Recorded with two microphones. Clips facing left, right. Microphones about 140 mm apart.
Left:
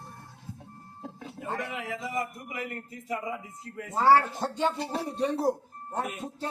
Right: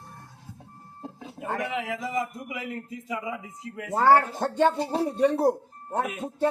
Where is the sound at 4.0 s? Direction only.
55° right (ahead or behind).